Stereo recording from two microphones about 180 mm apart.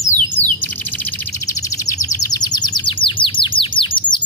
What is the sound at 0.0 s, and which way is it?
Bird, 15° left (ahead or behind).